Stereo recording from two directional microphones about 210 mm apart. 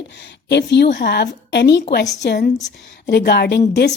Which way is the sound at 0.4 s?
55° left (ahead or behind).